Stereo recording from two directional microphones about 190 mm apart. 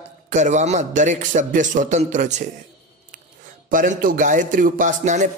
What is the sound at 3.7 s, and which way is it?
A man's voice, 45° right (ahead or behind).